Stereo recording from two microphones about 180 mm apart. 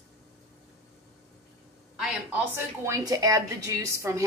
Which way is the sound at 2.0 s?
10° right (ahead or behind).